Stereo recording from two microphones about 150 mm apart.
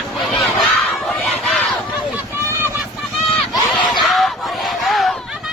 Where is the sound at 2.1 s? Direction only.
15° right (ahead or behind).